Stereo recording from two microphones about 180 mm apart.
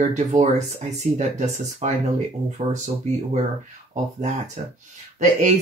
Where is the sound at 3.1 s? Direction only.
40° right (ahead or behind).